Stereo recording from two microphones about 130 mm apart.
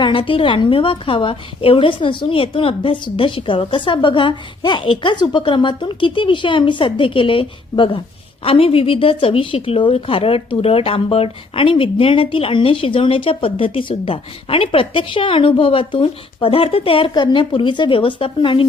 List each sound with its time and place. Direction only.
0.0 s a woman's voice: 40° left (ahead or behind)